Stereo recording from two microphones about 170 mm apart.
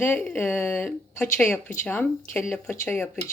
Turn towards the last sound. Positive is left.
turn(degrees=15)  # may be behind; listen again after turning